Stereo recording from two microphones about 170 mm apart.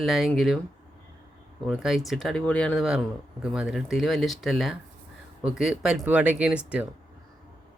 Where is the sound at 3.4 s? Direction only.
5° right (ahead or behind).